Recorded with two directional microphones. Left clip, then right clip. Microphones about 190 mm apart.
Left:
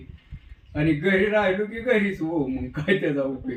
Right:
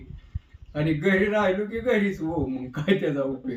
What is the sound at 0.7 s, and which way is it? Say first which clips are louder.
Speech: left 2 dB; 15° right (ahead or behind).